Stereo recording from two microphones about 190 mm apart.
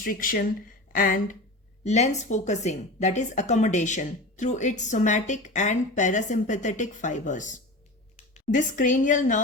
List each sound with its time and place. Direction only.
0.0 s a woman's voice: 50° left (ahead or behind)